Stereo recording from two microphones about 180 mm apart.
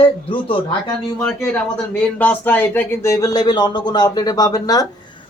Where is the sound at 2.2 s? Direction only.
10° left (ahead or behind).